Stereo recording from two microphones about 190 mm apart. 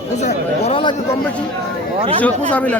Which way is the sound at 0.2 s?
35° left (ahead or behind).